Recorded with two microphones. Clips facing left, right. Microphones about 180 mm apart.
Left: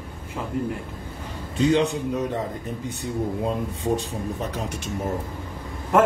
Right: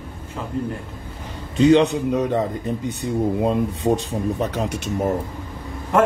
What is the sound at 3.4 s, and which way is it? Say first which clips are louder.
Speech: right 6 dB; 80° right.